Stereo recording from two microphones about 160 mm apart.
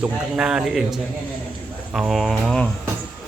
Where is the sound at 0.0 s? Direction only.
5° right (ahead or behind).